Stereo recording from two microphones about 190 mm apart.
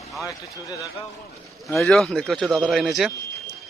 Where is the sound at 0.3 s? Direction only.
20° left (ahead or behind).